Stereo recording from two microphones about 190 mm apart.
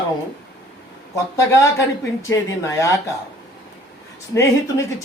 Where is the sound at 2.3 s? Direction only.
15° left (ahead or behind).